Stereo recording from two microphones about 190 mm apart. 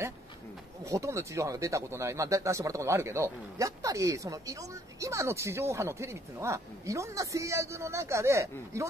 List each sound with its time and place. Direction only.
0.8 s speech: 15° right (ahead or behind)